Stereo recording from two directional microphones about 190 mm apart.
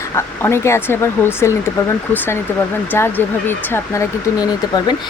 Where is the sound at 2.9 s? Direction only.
10° left (ahead or behind).